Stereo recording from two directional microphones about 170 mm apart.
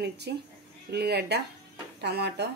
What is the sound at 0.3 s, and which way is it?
Speech, 80° right.